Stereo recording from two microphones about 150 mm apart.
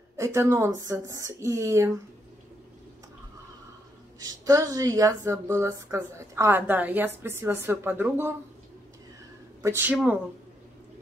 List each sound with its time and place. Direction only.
0.2 s a woman's voice: 20° right (ahead or behind)
4.2 s a woman's voice: 25° right (ahead or behind)
9.6 s speech: 15° right (ahead or behind)